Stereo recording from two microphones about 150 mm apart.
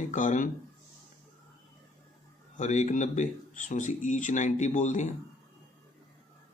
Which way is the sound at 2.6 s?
55° left (ahead or behind).